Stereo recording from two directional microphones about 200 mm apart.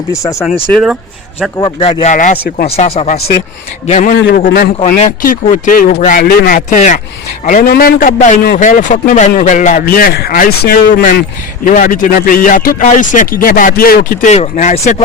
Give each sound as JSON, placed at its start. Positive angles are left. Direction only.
{"t": 0.1, "sound": "speech", "side_deg": 15}
{"t": 0.7, "sound": "speech", "side_deg": 0}
{"t": 1.5, "sound": "speech", "side_deg": 20}
{"t": 4.1, "sound": "a man's voice", "side_deg": 60}
{"t": 4.9, "sound": "a man's voice", "side_deg": 40}
{"t": 6.7, "sound": "a man's voice", "side_deg": 35}